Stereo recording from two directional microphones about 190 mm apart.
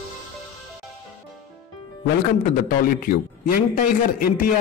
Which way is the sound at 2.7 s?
50° left (ahead or behind).